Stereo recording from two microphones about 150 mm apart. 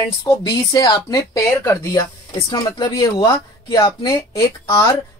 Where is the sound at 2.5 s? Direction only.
25° left (ahead or behind).